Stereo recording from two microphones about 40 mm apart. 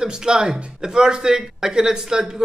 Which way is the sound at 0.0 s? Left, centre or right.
Centre.